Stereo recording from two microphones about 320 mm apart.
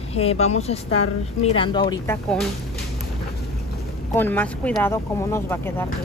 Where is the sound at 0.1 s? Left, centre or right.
Centre.